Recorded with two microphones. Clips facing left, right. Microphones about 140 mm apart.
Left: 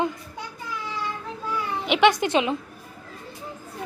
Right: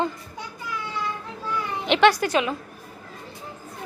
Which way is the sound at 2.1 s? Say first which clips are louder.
Even; 25° left (ahead or behind).